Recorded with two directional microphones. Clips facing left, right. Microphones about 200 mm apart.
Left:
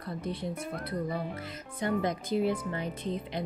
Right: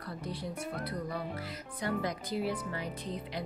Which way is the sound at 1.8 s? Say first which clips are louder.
Left 4 dB; 25° left (ahead or behind).